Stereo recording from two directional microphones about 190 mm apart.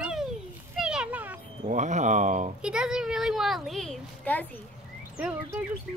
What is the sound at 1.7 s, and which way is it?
Speech, 40° right (ahead or behind).